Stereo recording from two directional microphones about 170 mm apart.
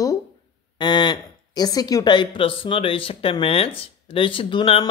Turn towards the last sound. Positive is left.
turn(degrees=30)  # may be behind; listen again after turning